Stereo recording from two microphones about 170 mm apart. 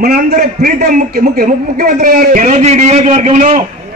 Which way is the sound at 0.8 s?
50° right (ahead or behind).